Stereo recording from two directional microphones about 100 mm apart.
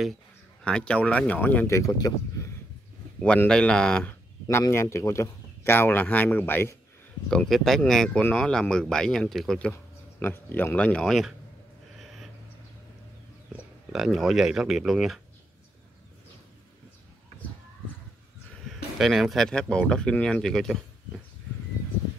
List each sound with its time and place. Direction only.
0.7 s speech: 10° left (ahead or behind)
1.7 s speech: 35° left (ahead or behind)
3.4 s speech: 10° left (ahead or behind)
4.1 s speech: 25° left (ahead or behind)
7.2 s speech: 5° left (ahead or behind)
10.1 s speech: 20° left (ahead or behind)
13.9 s speech: 5° right (ahead or behind)
18.7 s speech: centre (ahead or behind)